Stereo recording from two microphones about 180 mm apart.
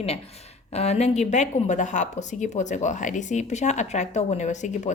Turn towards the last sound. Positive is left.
turn(degrees=40)  # may be behind; listen again after turning